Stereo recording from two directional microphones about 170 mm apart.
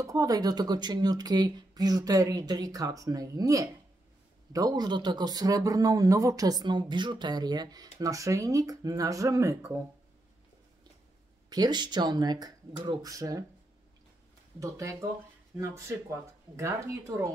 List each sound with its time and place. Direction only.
0.0 s speech: 20° right (ahead or behind)
11.5 s speech: 25° right (ahead or behind)
14.6 s speech: 20° right (ahead or behind)